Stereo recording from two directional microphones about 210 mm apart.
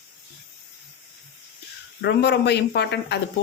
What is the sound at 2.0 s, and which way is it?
Speech, 55° left (ahead or behind).